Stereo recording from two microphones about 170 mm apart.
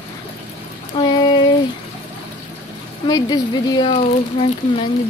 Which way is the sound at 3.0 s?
25° left (ahead or behind).